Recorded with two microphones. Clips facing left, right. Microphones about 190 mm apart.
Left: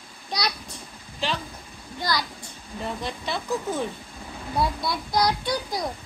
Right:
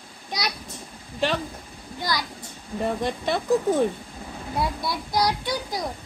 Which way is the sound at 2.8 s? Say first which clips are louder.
Right 6 dB; 50° right (ahead or behind).